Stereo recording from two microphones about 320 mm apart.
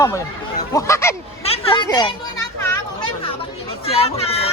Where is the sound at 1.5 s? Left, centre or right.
Centre.